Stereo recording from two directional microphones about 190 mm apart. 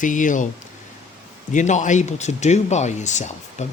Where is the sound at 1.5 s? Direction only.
40° left (ahead or behind).